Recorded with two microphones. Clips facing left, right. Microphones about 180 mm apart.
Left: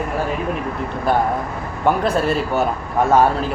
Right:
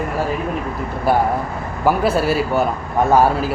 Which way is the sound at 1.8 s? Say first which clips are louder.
Right 1 dB; 5° right (ahead or behind).